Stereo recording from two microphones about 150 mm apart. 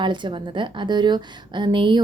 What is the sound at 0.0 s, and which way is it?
A woman's voice, 30° right (ahead or behind).